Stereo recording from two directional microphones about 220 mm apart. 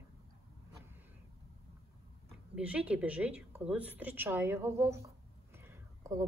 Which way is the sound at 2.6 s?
5° right (ahead or behind).